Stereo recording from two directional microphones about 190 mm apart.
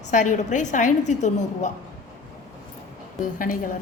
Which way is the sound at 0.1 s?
40° left (ahead or behind).